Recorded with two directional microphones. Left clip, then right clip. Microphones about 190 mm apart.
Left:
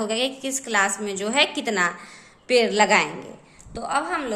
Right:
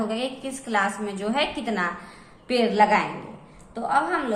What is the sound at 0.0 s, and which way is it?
A woman's voice, 45° left (ahead or behind).